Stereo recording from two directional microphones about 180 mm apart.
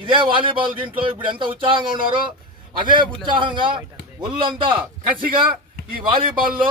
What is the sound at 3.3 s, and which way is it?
Speech, 25° right (ahead or behind).